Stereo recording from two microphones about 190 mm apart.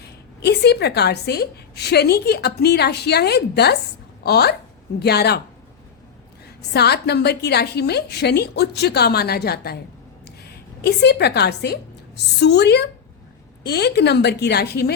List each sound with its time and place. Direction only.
0.0 s a woman's voice: 60° left (ahead or behind)
6.7 s speech: 60° left (ahead or behind)
10.8 s speech: 60° left (ahead or behind)